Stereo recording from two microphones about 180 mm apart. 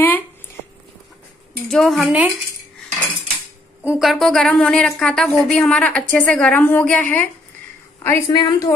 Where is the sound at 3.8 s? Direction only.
5° right (ahead or behind).